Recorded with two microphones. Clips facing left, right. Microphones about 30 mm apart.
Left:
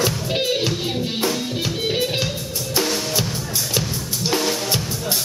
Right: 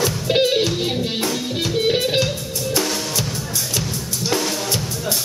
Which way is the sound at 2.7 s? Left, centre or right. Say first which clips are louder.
Left 1 dB; centre.